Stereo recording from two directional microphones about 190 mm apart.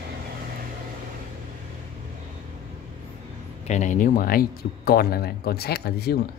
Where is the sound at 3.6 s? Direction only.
40° left (ahead or behind); by 6.1 s 55° left (ahead or behind).